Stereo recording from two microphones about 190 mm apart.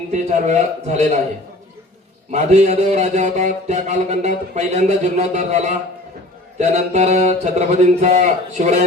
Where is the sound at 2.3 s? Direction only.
35° right (ahead or behind).